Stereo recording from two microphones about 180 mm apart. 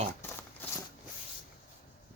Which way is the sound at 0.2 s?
10° left (ahead or behind).